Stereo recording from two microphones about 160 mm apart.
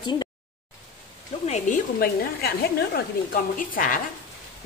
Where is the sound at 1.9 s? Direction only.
75° left (ahead or behind).